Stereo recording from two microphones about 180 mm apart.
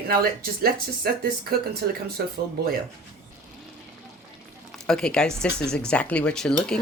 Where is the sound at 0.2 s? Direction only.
55° right (ahead or behind).